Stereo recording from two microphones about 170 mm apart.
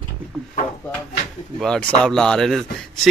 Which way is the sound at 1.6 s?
5° left (ahead or behind).